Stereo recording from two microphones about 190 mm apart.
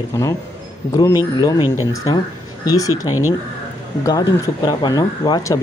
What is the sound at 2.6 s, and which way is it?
Speech, 20° left (ahead or behind).